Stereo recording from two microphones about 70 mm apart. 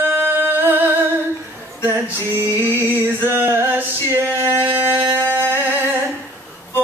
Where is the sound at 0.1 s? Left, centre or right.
Right.